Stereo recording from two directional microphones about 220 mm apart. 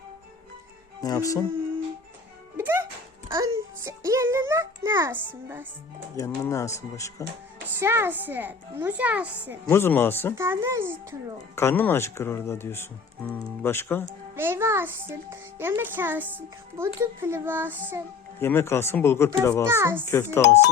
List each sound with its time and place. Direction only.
1.0 s speech: 15° left (ahead or behind)
2.6 s music: 10° right (ahead or behind)
6.1 s speech: 15° left (ahead or behind)
7.8 s a child's voice: 10° right (ahead or behind)
9.6 s speech: 10° left (ahead or behind)
10.3 s a child's voice: 10° right (ahead or behind)
11.5 s speech: 10° left (ahead or behind)
14.3 s a child's voice: 10° right (ahead or behind)
18.3 s speech: 10° left (ahead or behind)
19.6 s a child's voice: 10° right (ahead or behind)